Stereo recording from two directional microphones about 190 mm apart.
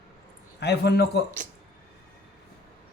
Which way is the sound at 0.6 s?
60° left (ahead or behind).